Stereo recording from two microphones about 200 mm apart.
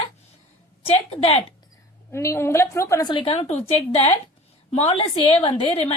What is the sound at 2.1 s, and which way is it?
A woman's voice, 15° left (ahead or behind).